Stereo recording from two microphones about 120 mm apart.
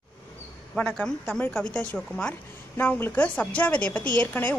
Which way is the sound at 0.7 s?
5° left (ahead or behind).